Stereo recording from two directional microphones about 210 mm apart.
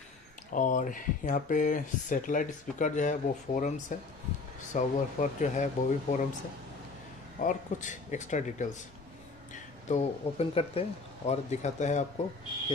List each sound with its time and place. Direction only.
0.5 s speech: 40° left (ahead or behind)
7.3 s speech: 35° left (ahead or behind)